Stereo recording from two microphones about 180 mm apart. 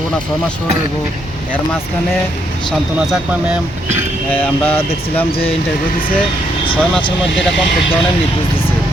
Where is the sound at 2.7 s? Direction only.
Centre (ahead or behind).